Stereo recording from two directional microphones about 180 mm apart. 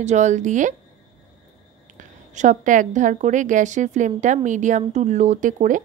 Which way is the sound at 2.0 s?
45° right (ahead or behind).